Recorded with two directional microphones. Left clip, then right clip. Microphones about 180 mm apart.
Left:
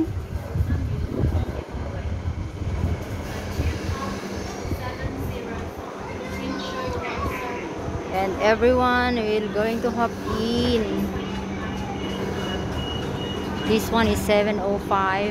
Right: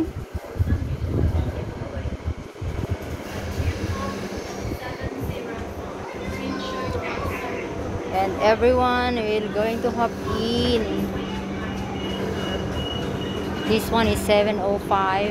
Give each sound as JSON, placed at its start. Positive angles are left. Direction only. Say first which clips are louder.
{"t": 8.2, "sound": "speech", "louder": "right 1 dB", "side_deg": 20}
{"t": 13.9, "sound": "speech", "louder": "right 2 dB", "side_deg": 15}